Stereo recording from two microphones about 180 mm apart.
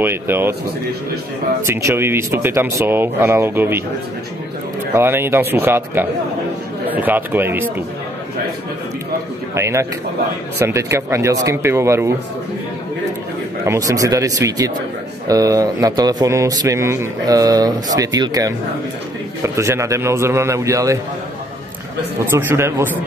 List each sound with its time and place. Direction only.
0.0 s speech: 10° right (ahead or behind)
1.7 s speech: 15° right (ahead or behind)
4.9 s speech: 10° right (ahead or behind)
9.6 s speech: 15° right (ahead or behind)
13.7 s a man's voice: 20° right (ahead or behind)
22.3 s speech: 15° right (ahead or behind)